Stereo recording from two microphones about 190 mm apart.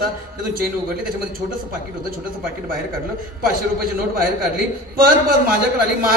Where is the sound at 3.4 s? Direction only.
50° right (ahead or behind).